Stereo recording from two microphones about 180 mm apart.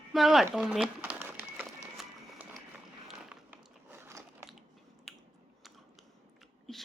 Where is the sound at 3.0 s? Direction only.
10° right (ahead or behind).